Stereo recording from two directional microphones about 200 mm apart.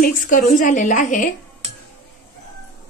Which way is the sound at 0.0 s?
45° left (ahead or behind).